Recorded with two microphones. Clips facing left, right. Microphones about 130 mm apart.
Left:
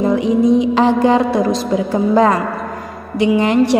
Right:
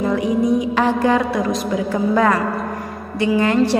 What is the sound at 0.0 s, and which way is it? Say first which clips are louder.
A woman's voice: left 4 dB; 25° left (ahead or behind).